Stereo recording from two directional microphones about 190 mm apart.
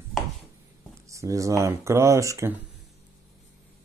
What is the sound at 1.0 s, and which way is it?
Speech, 15° right (ahead or behind).